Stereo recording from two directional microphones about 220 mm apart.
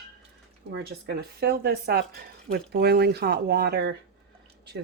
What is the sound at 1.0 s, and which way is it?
Speech, 45° right (ahead or behind).